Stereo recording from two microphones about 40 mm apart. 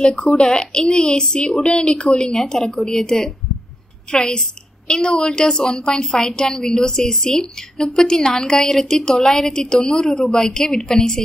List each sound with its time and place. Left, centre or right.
0.3 s a woman's voice: left